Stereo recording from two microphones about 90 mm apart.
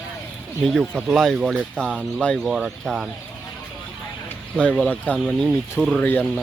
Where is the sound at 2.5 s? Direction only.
5° right (ahead or behind).